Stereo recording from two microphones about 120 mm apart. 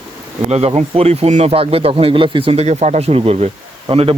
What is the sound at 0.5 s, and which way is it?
Speech, 55° right (ahead or behind).